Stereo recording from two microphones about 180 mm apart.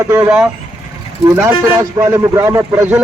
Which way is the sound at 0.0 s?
15° right (ahead or behind).